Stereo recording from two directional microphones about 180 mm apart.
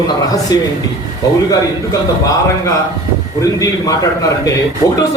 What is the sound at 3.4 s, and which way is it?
A man's voice, 20° left (ahead or behind).